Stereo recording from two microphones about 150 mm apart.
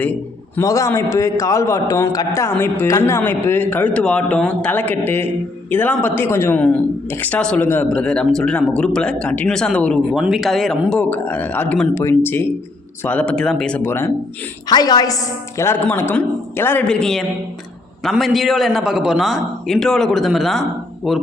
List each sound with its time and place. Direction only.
0.0 s a man's voice: 10° left (ahead or behind)
0.6 s a man's voice: 20° left (ahead or behind)
14.7 s a man's voice: 25° left (ahead or behind); by 21.2 s centre (ahead or behind)